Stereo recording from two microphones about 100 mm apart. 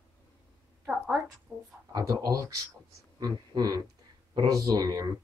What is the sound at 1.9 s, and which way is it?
Speech, 35° right (ahead or behind).